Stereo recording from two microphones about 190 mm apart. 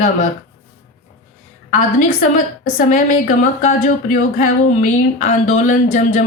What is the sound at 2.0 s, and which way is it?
A woman's voice, 45° left (ahead or behind).